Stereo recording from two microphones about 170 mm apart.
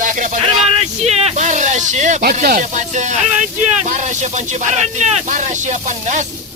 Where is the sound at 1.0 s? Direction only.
40° right (ahead or behind).